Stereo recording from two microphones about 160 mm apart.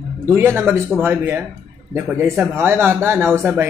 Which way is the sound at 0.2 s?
15° right (ahead or behind).